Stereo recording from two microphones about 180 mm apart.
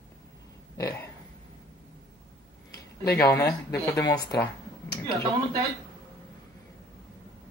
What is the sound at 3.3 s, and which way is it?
Speech, 15° left (ahead or behind).